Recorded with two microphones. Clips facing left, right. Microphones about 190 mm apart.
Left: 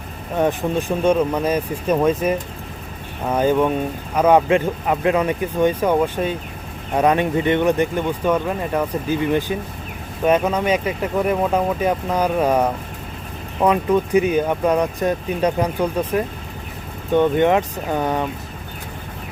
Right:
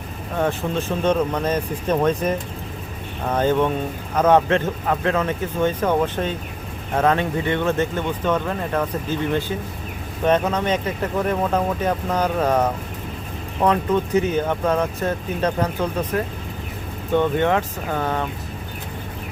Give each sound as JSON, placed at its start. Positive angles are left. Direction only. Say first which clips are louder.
{"t": 0.3, "sound": "speech", "louder": "left 3 dB", "side_deg": 15}